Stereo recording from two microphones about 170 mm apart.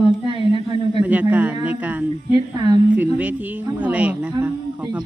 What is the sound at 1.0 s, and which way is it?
A man's voice, 10° right (ahead or behind).